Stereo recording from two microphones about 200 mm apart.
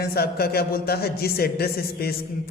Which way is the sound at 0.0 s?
50° left (ahead or behind).